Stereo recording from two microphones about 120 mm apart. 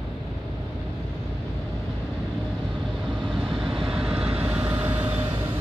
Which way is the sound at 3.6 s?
45° right (ahead or behind).